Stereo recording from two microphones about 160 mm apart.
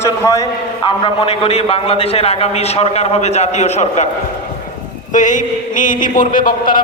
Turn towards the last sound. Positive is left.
turn(degrees=60)  # may be behind; listen again after turning